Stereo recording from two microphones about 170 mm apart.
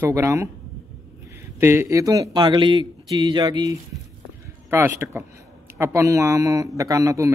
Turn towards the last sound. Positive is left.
turn(degrees=-20)  # may be behind; listen again after turning